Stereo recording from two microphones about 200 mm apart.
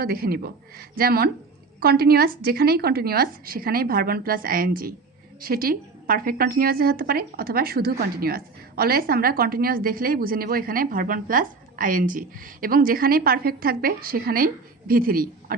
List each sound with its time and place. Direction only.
0.0 s a woman's voice: 50° right (ahead or behind)